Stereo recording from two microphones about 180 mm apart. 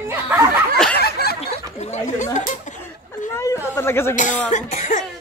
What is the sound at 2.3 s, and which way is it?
Chuckle, 40° left (ahead or behind).